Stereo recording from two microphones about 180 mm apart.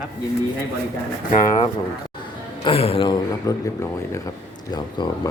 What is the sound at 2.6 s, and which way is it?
Speech, 30° left (ahead or behind).